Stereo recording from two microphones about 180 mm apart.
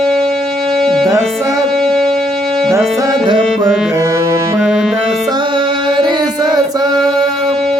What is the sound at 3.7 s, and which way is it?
Music, 5° right (ahead or behind).